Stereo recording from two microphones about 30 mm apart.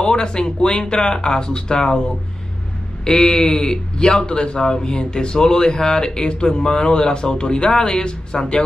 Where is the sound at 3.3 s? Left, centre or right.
Centre.